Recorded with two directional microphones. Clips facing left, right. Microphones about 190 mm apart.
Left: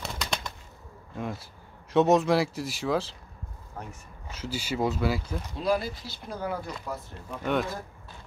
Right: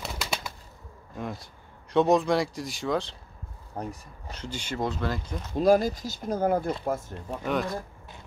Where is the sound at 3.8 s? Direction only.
35° right (ahead or behind).